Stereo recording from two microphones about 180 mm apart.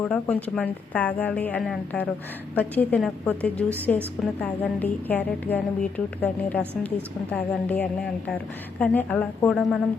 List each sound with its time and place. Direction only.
0.0 s a woman's voice: 10° left (ahead or behind)